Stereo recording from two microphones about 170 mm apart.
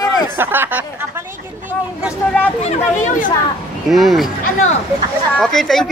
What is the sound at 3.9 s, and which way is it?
Speech, centre (ahead or behind).